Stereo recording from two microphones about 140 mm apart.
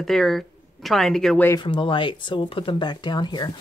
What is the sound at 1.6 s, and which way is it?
Speech, 40° left (ahead or behind).